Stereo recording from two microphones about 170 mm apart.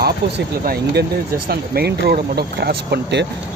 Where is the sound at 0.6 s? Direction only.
75° right (ahead or behind).